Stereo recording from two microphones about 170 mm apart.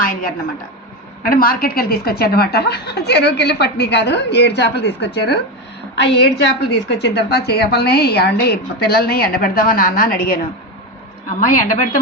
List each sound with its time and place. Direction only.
0.0 s a woman's voice: 55° left (ahead or behind)
11.3 s speech: 50° left (ahead or behind)